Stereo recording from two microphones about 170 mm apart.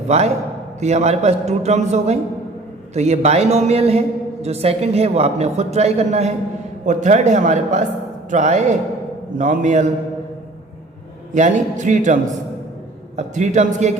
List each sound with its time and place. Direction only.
0.1 s a man's voice: 40° right (ahead or behind)
11.3 s a man's voice: 45° right (ahead or behind)